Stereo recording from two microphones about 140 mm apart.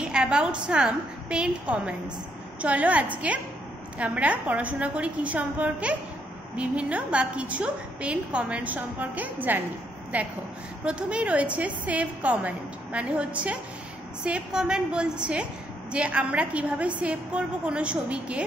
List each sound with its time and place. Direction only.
0.0 s a woman's voice: 5° right (ahead or behind)